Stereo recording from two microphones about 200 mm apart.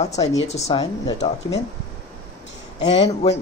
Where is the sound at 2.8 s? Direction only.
30° left (ahead or behind).